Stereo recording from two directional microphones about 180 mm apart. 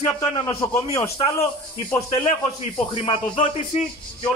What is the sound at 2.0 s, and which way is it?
Speech, 35° left (ahead or behind).